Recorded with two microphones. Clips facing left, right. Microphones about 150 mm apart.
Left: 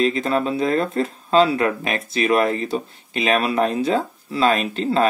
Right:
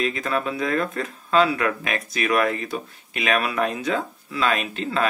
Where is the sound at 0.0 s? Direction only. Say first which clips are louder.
Left 5 dB; 30° left (ahead or behind).